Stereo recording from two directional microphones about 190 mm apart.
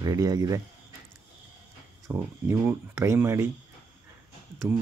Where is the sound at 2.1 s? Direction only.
10° right (ahead or behind).